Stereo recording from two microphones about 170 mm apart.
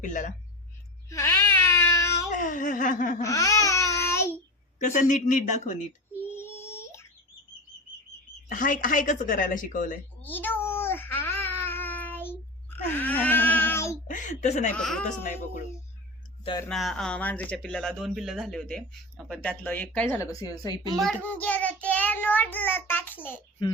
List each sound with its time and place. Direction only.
0.0 s speech: 50° left (ahead or behind)
1.1 s baby cry: 15° left (ahead or behind)
2.3 s speech: 50° left (ahead or behind)
3.2 s babbling: 20° left (ahead or behind)
4.0 s child singing: 15° left (ahead or behind)
4.8 s speech: 50° left (ahead or behind)
6.2 s a sound: 15° left (ahead or behind)
8.4 s speech: 50° left (ahead or behind)
10.2 s baby cry: 10° left (ahead or behind)
14.1 s speech: 45° left (ahead or behind)
14.8 s speech: 5° left (ahead or behind)
16.6 s speech: 5° left (ahead or behind); by 20.8 s 20° left (ahead or behind)
21.0 s child singing: 5° left (ahead or behind)